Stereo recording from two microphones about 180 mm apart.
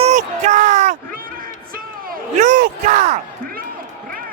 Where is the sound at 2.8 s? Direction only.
45° right (ahead or behind).